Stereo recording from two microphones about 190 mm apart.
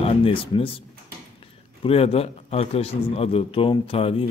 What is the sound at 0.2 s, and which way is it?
Speech, 30° left (ahead or behind).